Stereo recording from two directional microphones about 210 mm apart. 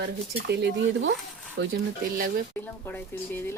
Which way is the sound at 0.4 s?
55° right (ahead or behind).